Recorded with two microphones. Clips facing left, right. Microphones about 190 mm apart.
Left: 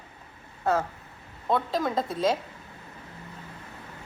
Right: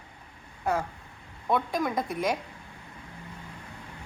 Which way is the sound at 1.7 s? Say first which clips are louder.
Left 1 dB; 25° left (ahead or behind).